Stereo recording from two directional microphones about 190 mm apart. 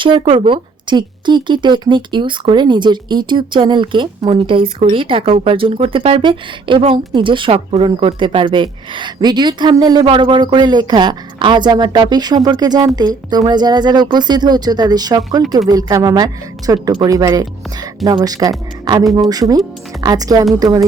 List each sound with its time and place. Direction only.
0.0 s speech: 25° right (ahead or behind)